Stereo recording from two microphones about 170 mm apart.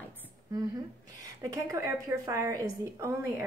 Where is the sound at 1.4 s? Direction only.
20° right (ahead or behind).